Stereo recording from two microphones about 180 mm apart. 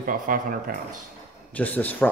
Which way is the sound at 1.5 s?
10° left (ahead or behind).